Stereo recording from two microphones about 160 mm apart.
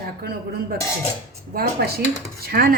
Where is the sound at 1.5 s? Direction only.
70° right (ahead or behind).